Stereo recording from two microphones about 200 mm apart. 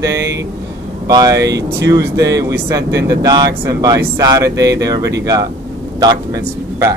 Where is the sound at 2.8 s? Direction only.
60° right (ahead or behind).